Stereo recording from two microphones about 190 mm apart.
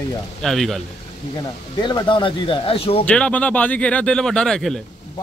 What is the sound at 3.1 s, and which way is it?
Speech, 5° left (ahead or behind).